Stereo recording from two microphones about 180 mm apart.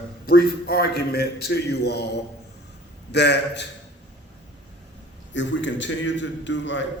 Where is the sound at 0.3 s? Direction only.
55° left (ahead or behind).